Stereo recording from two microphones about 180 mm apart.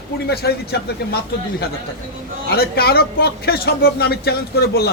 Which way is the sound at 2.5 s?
60° left (ahead or behind).